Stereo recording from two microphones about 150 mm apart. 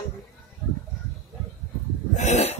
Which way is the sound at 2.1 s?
45° left (ahead or behind).